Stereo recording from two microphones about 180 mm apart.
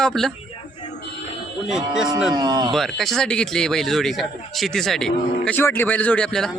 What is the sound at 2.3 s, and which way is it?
Speech, 20° right (ahead or behind).